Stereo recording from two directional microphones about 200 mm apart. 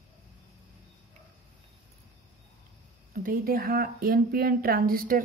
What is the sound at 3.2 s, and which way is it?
Speech, 45° right (ahead or behind).